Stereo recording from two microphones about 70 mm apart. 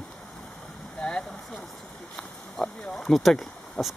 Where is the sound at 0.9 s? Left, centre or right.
Centre.